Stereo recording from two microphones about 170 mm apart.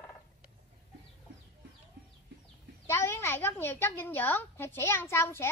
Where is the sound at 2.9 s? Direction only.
15° left (ahead or behind).